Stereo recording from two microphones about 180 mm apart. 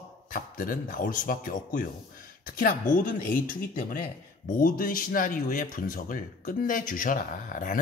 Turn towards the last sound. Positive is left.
turn(degrees=45)  # may be behind; listen again after turning